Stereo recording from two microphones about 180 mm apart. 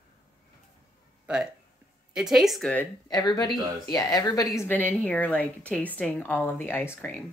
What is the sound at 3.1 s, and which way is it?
A woman's voice, 20° left (ahead or behind).